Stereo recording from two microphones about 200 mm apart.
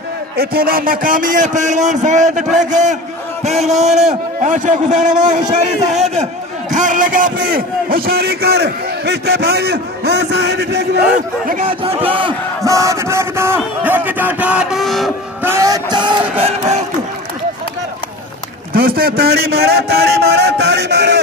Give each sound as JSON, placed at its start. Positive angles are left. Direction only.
{"t": 0.4, "sound": "a man's voice", "side_deg": -50}
{"t": 11.6, "sound": "battle cry", "side_deg": -25}
{"t": 13.8, "sound": "speech", "side_deg": -10}
{"t": 15.4, "sound": "a sound", "side_deg": -15}
{"t": 18.7, "sound": "a man's voice", "side_deg": -45}